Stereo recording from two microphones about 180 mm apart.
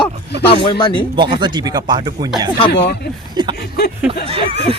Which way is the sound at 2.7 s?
65° left (ahead or behind).